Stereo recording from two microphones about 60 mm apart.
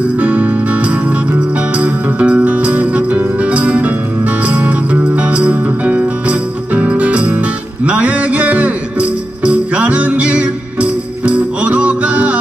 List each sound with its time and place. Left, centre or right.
0.2 s music: right
7.8 s a sound: right
9.4 s music: right